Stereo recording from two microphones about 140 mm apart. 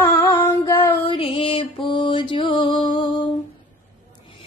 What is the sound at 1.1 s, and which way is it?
Music, 40° left (ahead or behind).